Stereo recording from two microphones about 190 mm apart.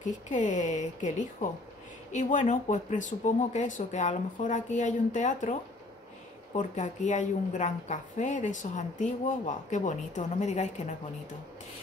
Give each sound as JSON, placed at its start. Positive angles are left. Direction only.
{"t": 0.0, "sound": "a woman's voice", "side_deg": 40}